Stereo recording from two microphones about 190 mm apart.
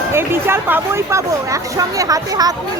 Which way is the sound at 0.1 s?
10° right (ahead or behind).